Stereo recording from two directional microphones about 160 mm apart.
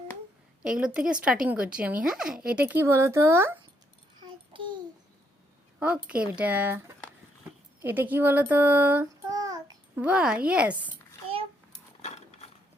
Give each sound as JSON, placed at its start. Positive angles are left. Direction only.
{"t": 0.6, "sound": "speech", "side_deg": -5}
{"t": 4.2, "sound": "a sound", "side_deg": -30}
{"t": 5.8, "sound": "speech", "side_deg": -5}
{"t": 9.3, "sound": "child singing", "side_deg": -25}
{"t": 9.9, "sound": "speech", "side_deg": -10}
{"t": 12.0, "sound": "mechanisms", "side_deg": 40}